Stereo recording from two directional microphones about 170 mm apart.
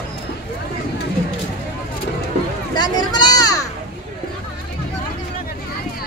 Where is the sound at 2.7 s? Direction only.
25° left (ahead or behind).